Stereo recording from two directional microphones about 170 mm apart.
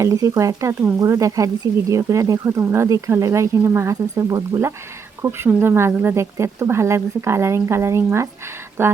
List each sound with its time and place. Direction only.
0.0 s speech: 20° right (ahead or behind)